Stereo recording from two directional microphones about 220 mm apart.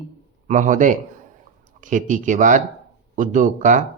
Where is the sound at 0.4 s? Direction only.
35° right (ahead or behind).